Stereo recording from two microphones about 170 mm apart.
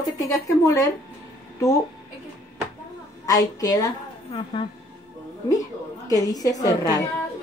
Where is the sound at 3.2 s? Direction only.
20° left (ahead or behind).